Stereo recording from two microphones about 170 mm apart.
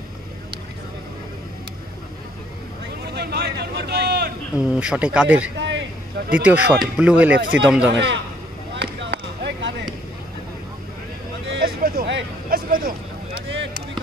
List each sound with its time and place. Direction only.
3.2 s a sound: 75° right (ahead or behind)
4.6 s speech: 5° right (ahead or behind)
5.6 s a sound: 90° right
6.3 s speech: 10° right (ahead or behind)
7.3 s a man's voice: 90° right
8.7 s basketball bounce: 90° right
11.4 s vehicle: 75° right (ahead or behind)